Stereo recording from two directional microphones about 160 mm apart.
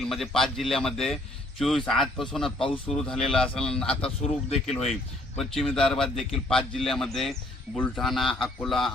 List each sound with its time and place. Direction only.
0.0 s a man's voice: centre (ahead or behind)
4.4 s speech: 40° left (ahead or behind)
5.4 s a man's voice: centre (ahead or behind)